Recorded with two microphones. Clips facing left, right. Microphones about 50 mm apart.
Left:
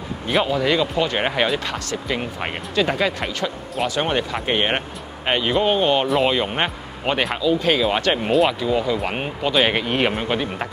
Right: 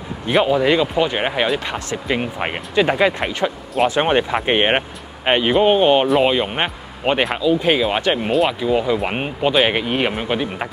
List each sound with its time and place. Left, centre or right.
0.5 s speech: centre
1.2 s speech: centre
1.7 s speech: right
6.0 s speech: centre
8.1 s speech: centre
8.5 s speech: centre
9.6 s speech: centre